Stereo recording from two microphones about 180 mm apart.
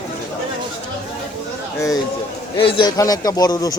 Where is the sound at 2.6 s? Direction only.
30° left (ahead or behind).